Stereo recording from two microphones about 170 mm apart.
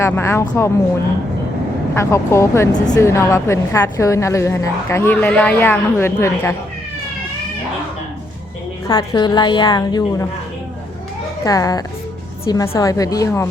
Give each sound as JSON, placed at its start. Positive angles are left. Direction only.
{"t": 0.0, "sound": "a woman's voice", "side_deg": 15}
{"t": 2.0, "sound": "a woman's voice", "side_deg": 15}
{"t": 8.9, "sound": "a woman's voice", "side_deg": 25}
{"t": 11.4, "sound": "a woman's voice", "side_deg": 20}